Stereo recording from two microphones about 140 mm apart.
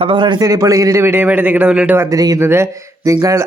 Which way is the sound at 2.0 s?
25° right (ahead or behind).